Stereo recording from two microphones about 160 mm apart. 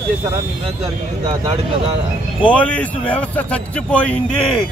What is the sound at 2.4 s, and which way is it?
A man's voice, 10° left (ahead or behind).